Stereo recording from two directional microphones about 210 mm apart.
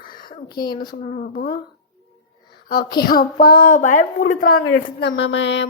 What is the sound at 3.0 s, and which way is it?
A woman's voice, 40° left (ahead or behind).